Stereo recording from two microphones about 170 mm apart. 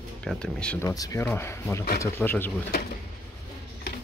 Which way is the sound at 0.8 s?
20° left (ahead or behind).